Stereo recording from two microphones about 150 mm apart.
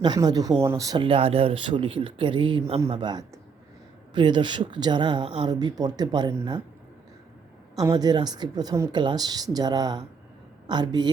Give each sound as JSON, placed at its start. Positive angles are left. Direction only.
{"t": 0.0, "sound": "speech", "side_deg": -25}
{"t": 1.0, "sound": "speech", "side_deg": -40}
{"t": 7.8, "sound": "speech", "side_deg": -25}